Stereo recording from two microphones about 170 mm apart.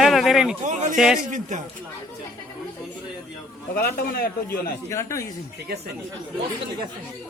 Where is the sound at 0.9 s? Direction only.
5° right (ahead or behind).